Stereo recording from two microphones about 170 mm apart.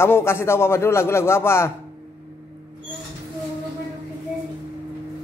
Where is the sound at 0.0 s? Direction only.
15° left (ahead or behind).